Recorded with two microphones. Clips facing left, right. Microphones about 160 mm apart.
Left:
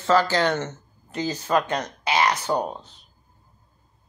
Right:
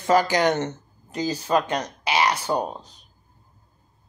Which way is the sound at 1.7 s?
10° right (ahead or behind).